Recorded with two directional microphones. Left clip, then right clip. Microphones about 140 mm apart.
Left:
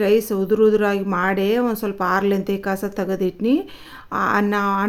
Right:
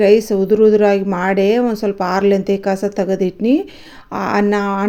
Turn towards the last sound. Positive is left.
turn(degrees=-20)  # may be behind; listen again after turning